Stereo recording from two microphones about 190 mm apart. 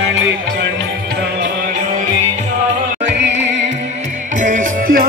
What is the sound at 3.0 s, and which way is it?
Music, 35° right (ahead or behind).